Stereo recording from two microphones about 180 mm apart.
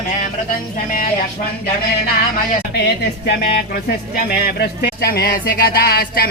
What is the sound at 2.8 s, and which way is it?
Speech, 65° left (ahead or behind).